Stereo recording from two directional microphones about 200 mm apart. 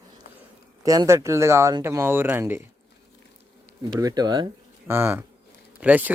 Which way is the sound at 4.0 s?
20° right (ahead or behind).